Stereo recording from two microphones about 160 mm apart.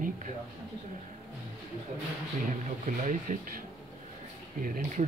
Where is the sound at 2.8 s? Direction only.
55° right (ahead or behind).